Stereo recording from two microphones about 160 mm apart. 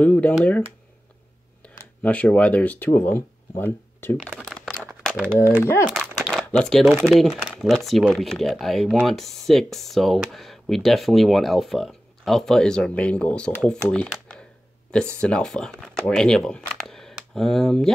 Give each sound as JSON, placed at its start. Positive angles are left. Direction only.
{"t": 0.0, "sound": "speech", "side_deg": 5}
{"t": 1.6, "sound": "speech", "side_deg": 10}
{"t": 4.2, "sound": "crumpling", "side_deg": 0}
{"t": 5.3, "sound": "speech", "side_deg": -10}
{"t": 5.9, "sound": "crumpling", "side_deg": -5}
{"t": 6.4, "sound": "speech", "side_deg": 10}